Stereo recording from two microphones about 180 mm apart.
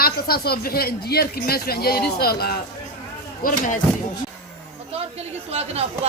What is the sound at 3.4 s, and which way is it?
Speech, 50° left (ahead or behind).